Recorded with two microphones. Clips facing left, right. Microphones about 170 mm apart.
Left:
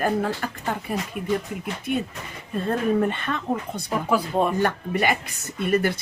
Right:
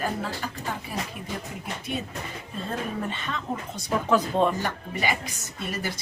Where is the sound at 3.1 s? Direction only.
55° left (ahead or behind).